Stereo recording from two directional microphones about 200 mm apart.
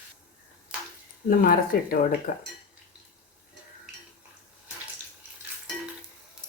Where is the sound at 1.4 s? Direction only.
45° left (ahead or behind).